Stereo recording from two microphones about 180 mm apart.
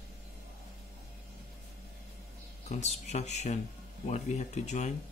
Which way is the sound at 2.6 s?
35° left (ahead or behind).